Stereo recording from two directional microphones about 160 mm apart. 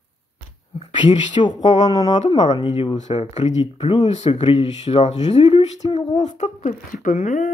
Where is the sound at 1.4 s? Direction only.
35° left (ahead or behind).